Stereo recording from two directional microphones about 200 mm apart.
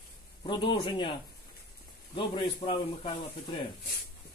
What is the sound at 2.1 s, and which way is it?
A man's voice, 25° left (ahead or behind).